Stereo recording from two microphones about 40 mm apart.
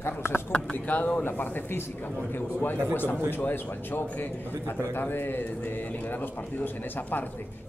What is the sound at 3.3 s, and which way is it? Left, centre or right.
A man's voice, left.